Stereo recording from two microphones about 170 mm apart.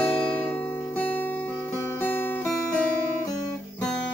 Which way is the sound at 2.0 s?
10° left (ahead or behind).